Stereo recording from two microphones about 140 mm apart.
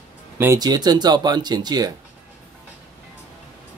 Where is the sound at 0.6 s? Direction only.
30° right (ahead or behind).